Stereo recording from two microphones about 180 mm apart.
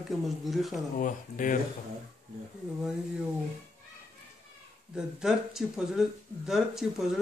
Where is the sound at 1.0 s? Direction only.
50° left (ahead or behind).